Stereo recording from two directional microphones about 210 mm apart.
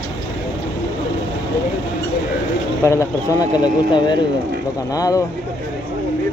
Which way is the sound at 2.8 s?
15° left (ahead or behind).